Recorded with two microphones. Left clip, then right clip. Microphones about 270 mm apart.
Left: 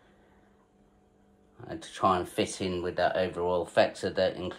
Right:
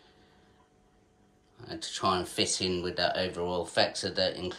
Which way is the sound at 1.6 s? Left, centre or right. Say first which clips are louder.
Left 3 dB; centre.